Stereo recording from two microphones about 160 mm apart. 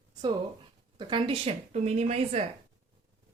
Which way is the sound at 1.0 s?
30° right (ahead or behind).